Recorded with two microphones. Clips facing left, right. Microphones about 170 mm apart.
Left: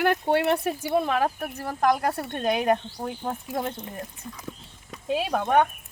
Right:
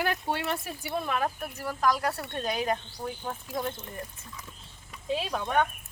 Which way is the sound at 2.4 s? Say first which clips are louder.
Left 7 dB; 55° left (ahead or behind).